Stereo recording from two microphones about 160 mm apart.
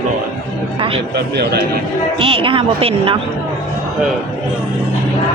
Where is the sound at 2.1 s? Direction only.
35° right (ahead or behind).